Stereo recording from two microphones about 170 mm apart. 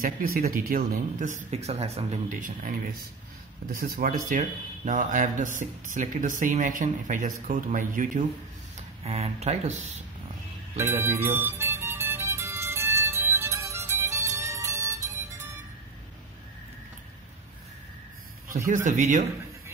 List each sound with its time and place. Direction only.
0.0 s speech: 60° right (ahead or behind)
1.5 s speech: 35° right (ahead or behind)
9.0 s speech: 35° right (ahead or behind)
10.9 s music: 15° right (ahead or behind)
18.9 s speech: 50° right (ahead or behind)